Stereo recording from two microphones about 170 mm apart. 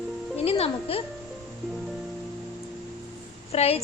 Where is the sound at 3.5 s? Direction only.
35° left (ahead or behind).